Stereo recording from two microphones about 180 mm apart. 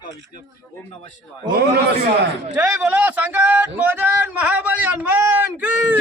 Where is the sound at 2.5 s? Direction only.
10° right (ahead or behind).